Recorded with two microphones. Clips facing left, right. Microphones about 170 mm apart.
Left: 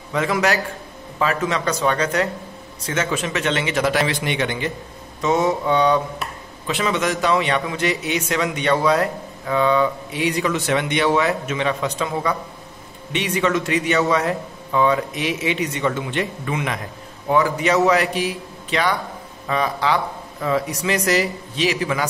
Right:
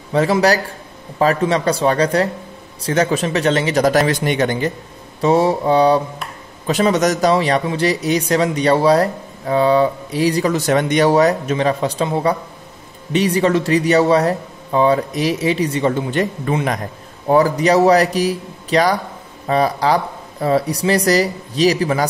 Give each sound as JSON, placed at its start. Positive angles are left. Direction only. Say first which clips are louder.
{"t": 0.1, "sound": "a man's voice", "louder": "right 5 dB", "side_deg": -35}